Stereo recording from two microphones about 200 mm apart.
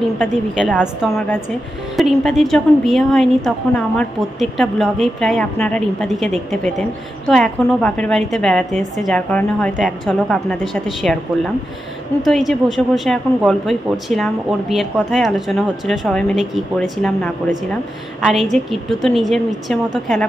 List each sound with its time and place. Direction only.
0.7 s a woman's voice: 5° left (ahead or behind)